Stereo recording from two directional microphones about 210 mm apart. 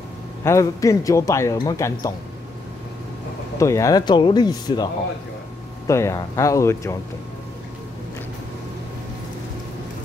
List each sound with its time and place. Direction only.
0.4 s a man's voice: 15° left (ahead or behind)
3.5 s speech: 15° left (ahead or behind)
5.9 s a man's voice: 15° left (ahead or behind)